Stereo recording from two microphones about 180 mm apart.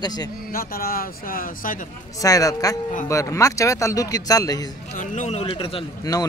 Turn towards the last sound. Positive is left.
turn(degrees=20)  # may be behind; listen again after turning